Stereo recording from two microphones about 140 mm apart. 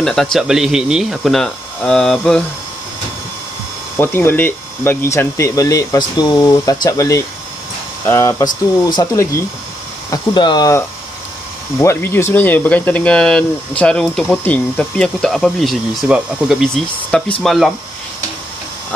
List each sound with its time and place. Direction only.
0.0 s speech: 5° left (ahead or behind)
4.0 s speech: 15° left (ahead or behind)
11.8 s speech: 20° left (ahead or behind); by 17.7 s centre (ahead or behind)